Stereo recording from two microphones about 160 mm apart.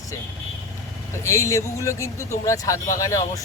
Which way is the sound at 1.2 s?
20° left (ahead or behind).